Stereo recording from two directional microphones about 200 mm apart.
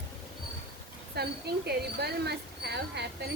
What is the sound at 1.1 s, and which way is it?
A woman's voice, 55° right (ahead or behind).